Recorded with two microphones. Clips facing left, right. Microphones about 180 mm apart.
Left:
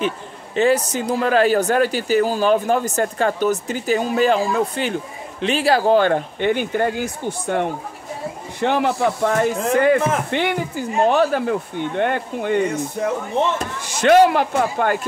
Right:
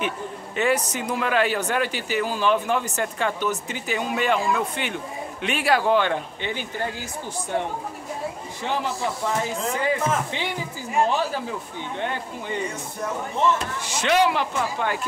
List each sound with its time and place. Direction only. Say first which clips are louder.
0.6 s speech: left 6 dB; 30° left (ahead or behind); by 13.1 s 65° left (ahead or behind)
13.6 s speech: left 4 dB; 45° left (ahead or behind)